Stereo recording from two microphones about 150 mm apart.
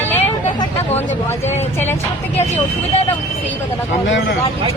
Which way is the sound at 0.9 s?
15° left (ahead or behind).